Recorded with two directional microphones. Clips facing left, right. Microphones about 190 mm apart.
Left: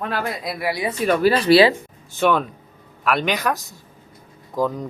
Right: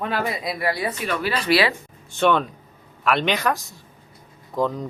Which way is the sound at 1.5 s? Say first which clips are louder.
Left 6 dB; 30° left (ahead or behind).